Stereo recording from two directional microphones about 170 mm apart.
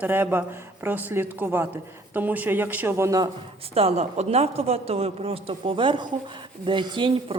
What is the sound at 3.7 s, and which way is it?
Speech, 35° right (ahead or behind).